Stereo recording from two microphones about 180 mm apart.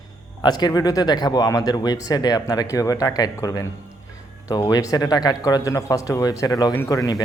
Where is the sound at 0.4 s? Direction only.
20° left (ahead or behind).